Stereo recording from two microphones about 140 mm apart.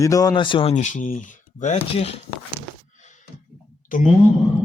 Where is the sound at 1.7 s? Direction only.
45° left (ahead or behind).